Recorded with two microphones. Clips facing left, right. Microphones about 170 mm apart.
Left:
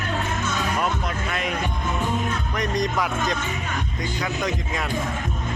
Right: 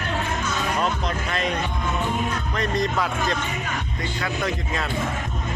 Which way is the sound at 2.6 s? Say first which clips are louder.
Even; 15° left (ahead or behind).